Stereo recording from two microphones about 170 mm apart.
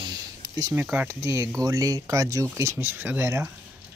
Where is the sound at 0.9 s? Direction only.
15° right (ahead or behind).